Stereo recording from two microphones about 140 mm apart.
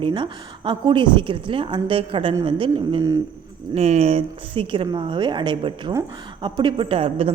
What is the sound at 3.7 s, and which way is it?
A woman's voice, 50° right (ahead or behind).